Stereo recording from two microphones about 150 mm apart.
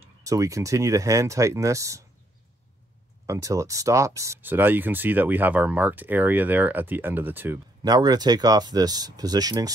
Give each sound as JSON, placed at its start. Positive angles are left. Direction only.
{"t": 0.2, "sound": "speech", "side_deg": -20}
{"t": 3.3, "sound": "speech", "side_deg": -20}
{"t": 7.8, "sound": "speech", "side_deg": -25}